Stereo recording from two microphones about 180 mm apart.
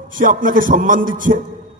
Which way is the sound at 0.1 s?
50° right (ahead or behind).